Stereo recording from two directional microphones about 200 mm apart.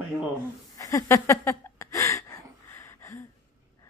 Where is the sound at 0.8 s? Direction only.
15° left (ahead or behind).